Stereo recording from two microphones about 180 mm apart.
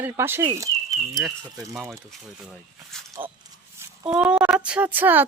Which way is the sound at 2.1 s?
Centre (ahead or behind).